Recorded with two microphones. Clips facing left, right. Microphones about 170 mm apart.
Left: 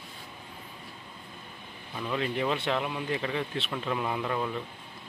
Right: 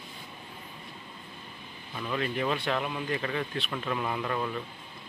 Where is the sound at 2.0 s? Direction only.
15° left (ahead or behind).